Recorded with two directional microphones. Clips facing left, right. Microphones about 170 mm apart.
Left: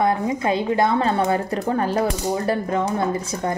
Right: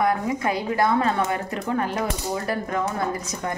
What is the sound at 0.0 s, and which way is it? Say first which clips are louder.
Speech: left 2 dB; 25° left (ahead or behind).